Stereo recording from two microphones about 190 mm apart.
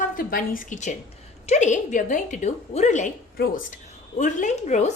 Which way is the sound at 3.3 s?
55° left (ahead or behind).